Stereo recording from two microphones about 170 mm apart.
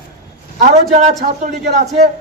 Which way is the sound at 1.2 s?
45° right (ahead or behind).